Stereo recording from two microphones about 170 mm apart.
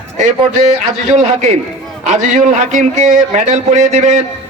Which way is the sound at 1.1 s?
40° right (ahead or behind).